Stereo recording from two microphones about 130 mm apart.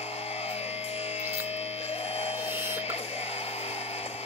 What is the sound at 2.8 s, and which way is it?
Music, 55° left (ahead or behind).